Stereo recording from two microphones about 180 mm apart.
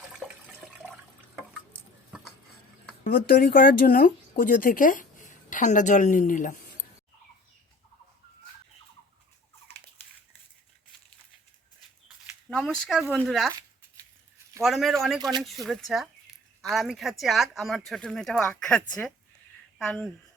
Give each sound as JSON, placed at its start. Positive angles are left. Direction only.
{"t": 0.1, "sound": "toilet flush", "side_deg": -5}
{"t": 3.0, "sound": "speech", "side_deg": 55}
{"t": 12.5, "sound": "speech", "side_deg": 5}
{"t": 14.6, "sound": "speech", "side_deg": 0}
{"t": 15.2, "sound": "speech", "side_deg": -20}
{"t": 15.4, "sound": "a sound", "side_deg": 0}
{"t": 16.7, "sound": "speech", "side_deg": 0}
{"t": 19.8, "sound": "speech", "side_deg": 5}